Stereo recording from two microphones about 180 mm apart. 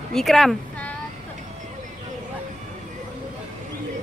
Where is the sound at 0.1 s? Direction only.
Centre (ahead or behind).